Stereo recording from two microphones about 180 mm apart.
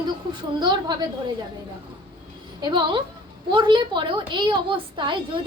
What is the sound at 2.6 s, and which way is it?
A woman's voice, 25° right (ahead or behind).